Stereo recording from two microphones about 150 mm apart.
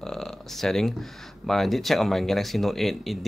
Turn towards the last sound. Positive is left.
turn(degrees=0)  # may be behind; listen again after turning